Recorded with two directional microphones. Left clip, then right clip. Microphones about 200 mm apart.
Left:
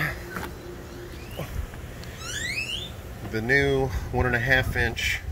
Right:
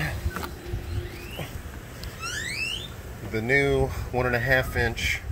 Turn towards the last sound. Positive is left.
turn(degrees=-5)  # may be behind; listen again after turning